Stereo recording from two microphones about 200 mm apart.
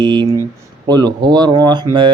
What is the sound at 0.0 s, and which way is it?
Speech, 20° right (ahead or behind).